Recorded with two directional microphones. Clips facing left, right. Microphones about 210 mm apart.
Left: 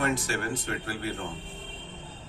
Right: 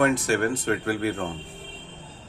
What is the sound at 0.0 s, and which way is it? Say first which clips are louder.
Speech: right 7 dB; 55° right (ahead or behind).